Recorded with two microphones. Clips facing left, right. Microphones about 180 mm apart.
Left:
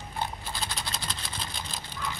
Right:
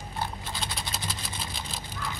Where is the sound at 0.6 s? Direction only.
5° right (ahead or behind).